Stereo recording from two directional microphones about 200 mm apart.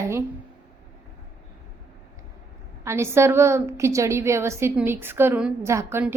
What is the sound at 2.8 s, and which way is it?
A woman's voice, 15° right (ahead or behind).